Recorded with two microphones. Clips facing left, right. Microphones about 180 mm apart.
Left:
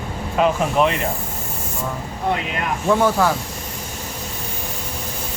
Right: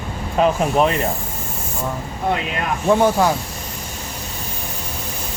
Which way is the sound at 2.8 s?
20° right (ahead or behind).